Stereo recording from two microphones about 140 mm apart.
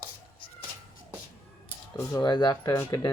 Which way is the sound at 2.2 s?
30° left (ahead or behind).